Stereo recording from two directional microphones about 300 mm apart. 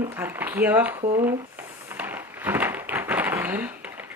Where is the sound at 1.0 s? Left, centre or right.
Centre.